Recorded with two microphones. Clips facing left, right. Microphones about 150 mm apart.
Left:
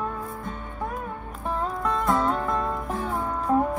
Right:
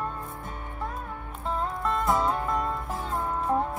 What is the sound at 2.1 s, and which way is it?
Music, 20° right (ahead or behind).